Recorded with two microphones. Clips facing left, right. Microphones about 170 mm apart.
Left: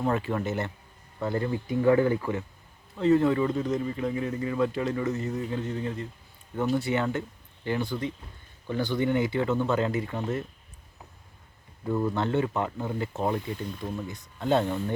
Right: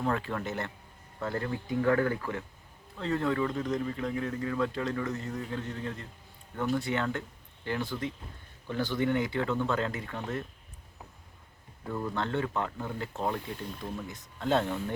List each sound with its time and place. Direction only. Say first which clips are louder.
0.0 s speech: left 4 dB; 10° left (ahead or behind)
3.0 s speech: left 7 dB; 5° left (ahead or behind)
11.9 s speech: left 6 dB; 10° left (ahead or behind)